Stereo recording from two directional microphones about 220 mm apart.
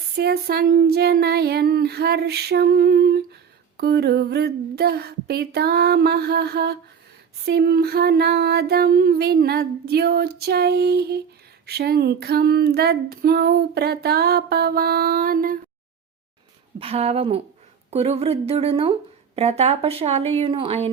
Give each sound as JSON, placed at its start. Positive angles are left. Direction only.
{"t": 0.2, "sound": "female singing", "side_deg": -45}
{"t": 16.8, "sound": "speech", "side_deg": -25}